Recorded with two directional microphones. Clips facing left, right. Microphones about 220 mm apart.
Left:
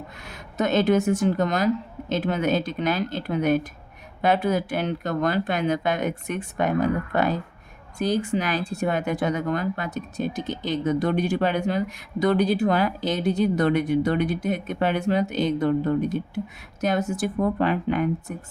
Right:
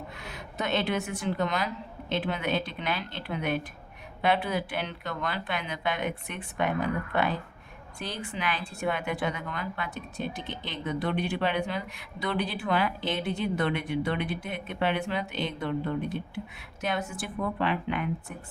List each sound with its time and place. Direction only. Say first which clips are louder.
0.1 s speech: even; 45° left (ahead or behind)